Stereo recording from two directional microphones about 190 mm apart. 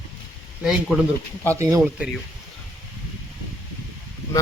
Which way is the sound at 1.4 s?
15° right (ahead or behind).